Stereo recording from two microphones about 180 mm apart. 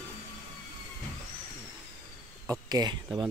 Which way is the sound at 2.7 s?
20° right (ahead or behind).